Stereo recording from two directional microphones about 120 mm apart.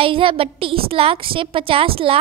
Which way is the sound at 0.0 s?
50° right (ahead or behind).